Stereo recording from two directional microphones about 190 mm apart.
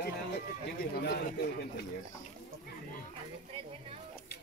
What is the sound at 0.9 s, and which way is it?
Speech, 55° left (ahead or behind).